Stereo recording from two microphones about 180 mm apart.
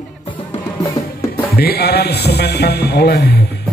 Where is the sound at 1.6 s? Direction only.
60° left (ahead or behind).